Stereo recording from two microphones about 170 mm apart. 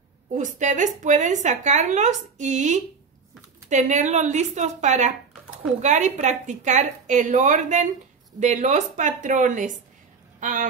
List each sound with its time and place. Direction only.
0.3 s speech: 45° right (ahead or behind)